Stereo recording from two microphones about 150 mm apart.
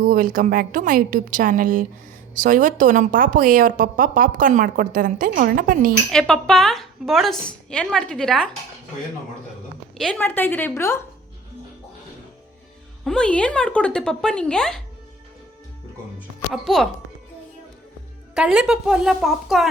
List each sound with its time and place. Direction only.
0.0 s a woman's voice: 65° right (ahead or behind)
6.1 s speech: 5° left (ahead or behind)
10.0 s a woman's voice: 10° left (ahead or behind)
13.1 s speech: 5° left (ahead or behind)
16.5 s speech: centre (ahead or behind)
18.3 s speech: 5° right (ahead or behind)